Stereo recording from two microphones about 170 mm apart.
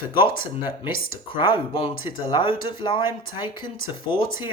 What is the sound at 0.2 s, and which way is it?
Speech, 25° left (ahead or behind).